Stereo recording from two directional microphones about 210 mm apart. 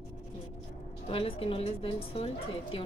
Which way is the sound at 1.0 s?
25° left (ahead or behind).